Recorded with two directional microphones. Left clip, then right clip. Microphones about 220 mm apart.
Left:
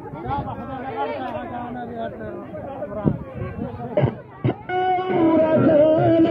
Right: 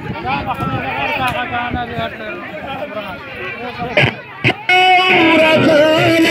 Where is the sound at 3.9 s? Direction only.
25° right (ahead or behind).